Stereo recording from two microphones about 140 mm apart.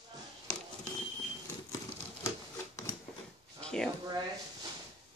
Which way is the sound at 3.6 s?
5° left (ahead or behind).